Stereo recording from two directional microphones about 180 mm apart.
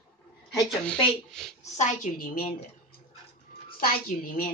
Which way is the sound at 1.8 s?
50° left (ahead or behind).